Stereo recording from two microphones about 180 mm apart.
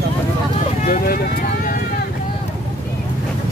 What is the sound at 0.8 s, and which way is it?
Speech, 55° left (ahead or behind).